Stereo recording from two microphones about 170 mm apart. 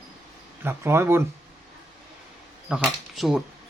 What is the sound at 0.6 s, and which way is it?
Speech, 15° right (ahead or behind).